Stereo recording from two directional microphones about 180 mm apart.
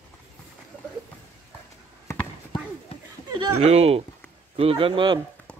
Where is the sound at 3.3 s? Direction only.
30° right (ahead or behind).